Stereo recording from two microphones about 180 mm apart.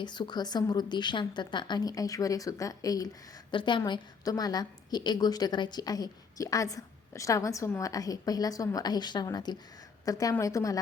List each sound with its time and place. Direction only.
0.0 s a woman's voice: 25° left (ahead or behind)